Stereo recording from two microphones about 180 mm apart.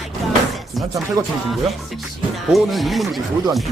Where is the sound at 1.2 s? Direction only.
20° right (ahead or behind).